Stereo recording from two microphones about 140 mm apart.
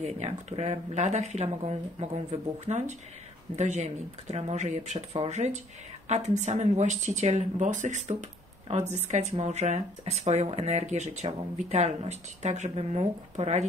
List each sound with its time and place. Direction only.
0.0 s speech: 50° right (ahead or behind)